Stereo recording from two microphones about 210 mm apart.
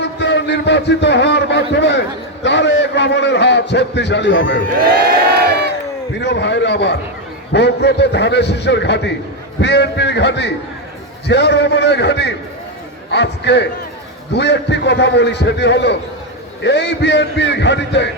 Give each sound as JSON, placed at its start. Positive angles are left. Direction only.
{"t": 0.0, "sound": "a man's voice", "side_deg": 55}
{"t": 6.1, "sound": "a man's voice", "side_deg": 55}